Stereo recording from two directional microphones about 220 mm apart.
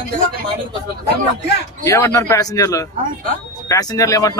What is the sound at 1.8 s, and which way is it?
A man's voice, 10° left (ahead or behind).